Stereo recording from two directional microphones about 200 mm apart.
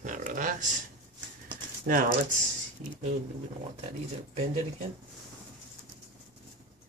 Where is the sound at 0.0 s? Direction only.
40° right (ahead or behind).